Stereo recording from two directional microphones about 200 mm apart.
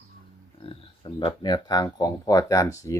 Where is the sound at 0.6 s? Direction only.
25° left (ahead or behind).